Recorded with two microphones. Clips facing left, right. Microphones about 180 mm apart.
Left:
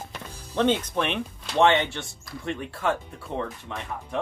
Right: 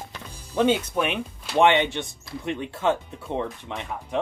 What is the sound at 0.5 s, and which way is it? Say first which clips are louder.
Speech: right 2 dB; 10° right (ahead or behind).